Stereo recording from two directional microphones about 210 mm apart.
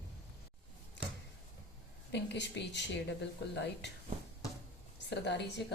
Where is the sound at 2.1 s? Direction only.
55° left (ahead or behind).